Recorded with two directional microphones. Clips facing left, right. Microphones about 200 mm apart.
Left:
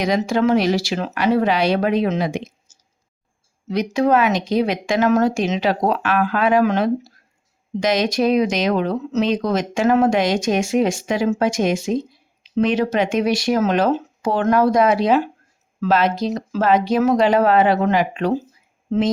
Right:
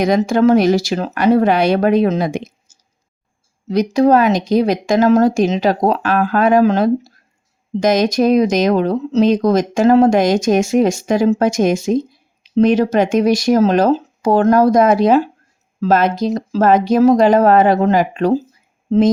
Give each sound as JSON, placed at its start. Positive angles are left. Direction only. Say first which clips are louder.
{"t": 0.0, "sound": "speech", "louder": "right 5 dB", "side_deg": -50}
{"t": 3.7, "sound": "speech", "louder": "right 5 dB", "side_deg": -40}